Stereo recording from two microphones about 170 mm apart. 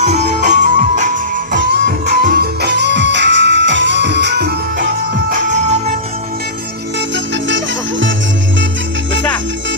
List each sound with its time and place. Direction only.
0.0 s music: 40° right (ahead or behind)
2.0 s music: 65° right (ahead or behind)
5.3 s music: 45° right (ahead or behind)
7.4 s music: 90° right